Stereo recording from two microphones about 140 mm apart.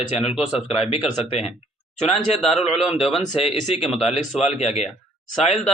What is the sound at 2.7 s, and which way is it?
Speech, centre (ahead or behind).